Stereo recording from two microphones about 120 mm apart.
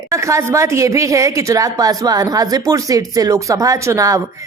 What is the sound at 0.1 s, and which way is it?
A woman's voice, 25° right (ahead or behind).